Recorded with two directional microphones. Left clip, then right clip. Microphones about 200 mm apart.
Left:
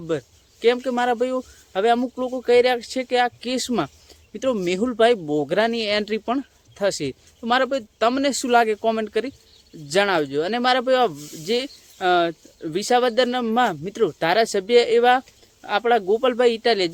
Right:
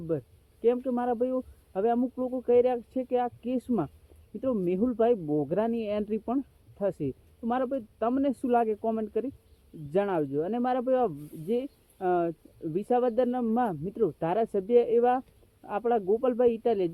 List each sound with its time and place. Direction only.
0.1 s speech: 20° left (ahead or behind)
2.0 s speech: 30° left (ahead or behind)
5.2 s speech: 35° left (ahead or behind)
5.5 s speech: 20° left (ahead or behind)